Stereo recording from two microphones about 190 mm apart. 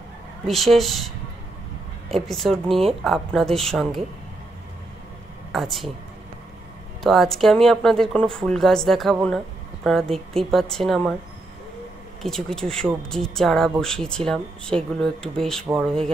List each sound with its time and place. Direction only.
0.5 s speech: centre (ahead or behind)
5.5 s speech: centre (ahead or behind)
7.0 s speech: centre (ahead or behind)
12.2 s speech: 5° left (ahead or behind)